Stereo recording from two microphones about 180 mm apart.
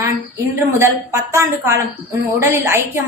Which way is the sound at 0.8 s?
15° right (ahead or behind).